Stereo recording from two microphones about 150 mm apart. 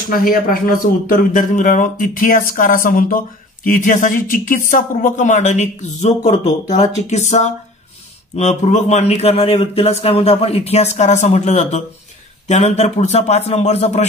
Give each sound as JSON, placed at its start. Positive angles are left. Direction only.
{"t": 0.1, "sound": "a man's voice", "side_deg": 70}